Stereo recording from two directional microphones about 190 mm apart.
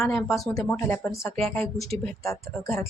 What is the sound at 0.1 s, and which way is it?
Speech, 15° left (ahead or behind).